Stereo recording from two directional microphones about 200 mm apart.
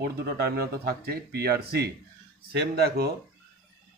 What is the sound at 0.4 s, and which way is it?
A man's voice, 50° right (ahead or behind).